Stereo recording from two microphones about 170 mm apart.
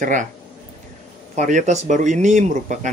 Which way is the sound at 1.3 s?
45° right (ahead or behind).